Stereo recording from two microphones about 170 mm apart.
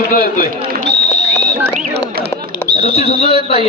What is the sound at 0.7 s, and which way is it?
Run, 70° right (ahead or behind).